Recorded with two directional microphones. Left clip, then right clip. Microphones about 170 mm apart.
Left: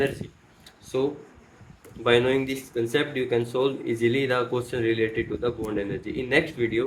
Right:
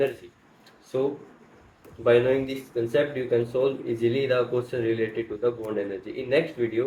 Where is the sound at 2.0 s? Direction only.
75° left (ahead or behind); by 5.7 s 90° left.